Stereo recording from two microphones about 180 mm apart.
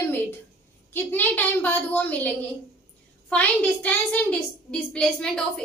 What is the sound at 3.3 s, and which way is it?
A woman's voice, 10° left (ahead or behind).